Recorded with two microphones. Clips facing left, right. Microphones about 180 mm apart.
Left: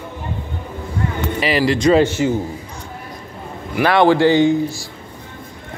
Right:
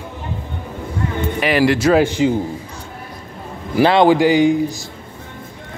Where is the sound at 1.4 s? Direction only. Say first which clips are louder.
Right 1 dB; centre (ahead or behind).